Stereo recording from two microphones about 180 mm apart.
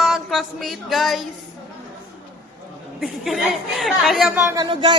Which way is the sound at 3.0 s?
Centre (ahead or behind).